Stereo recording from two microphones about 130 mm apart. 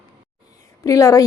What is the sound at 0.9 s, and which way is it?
Speech, 25° left (ahead or behind).